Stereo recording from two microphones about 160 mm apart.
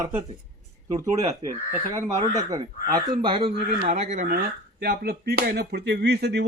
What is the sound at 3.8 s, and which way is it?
Speech, 45° right (ahead or behind).